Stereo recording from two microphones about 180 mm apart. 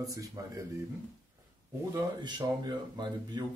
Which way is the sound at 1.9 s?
25° right (ahead or behind).